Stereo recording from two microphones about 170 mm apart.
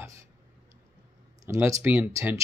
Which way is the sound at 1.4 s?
15° right (ahead or behind).